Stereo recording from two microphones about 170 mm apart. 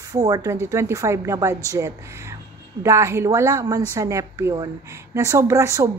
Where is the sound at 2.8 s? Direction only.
15° right (ahead or behind).